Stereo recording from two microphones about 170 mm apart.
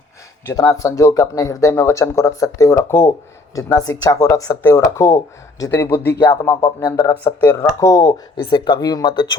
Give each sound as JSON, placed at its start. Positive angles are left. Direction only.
{"t": 0.7, "sound": "speech", "side_deg": 20}
{"t": 6.2, "sound": "speech", "side_deg": 25}